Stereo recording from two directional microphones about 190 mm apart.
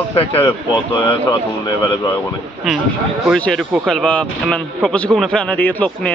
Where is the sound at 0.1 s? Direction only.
30° left (ahead or behind).